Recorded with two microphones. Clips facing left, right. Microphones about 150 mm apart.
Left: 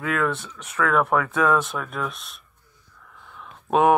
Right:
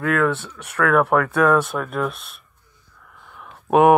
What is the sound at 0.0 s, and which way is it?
Speech, 50° right (ahead or behind).